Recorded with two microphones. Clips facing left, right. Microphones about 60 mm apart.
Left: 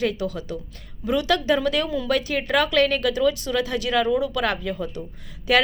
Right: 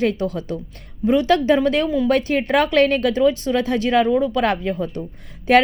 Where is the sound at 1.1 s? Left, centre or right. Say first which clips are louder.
Right 5 dB; right.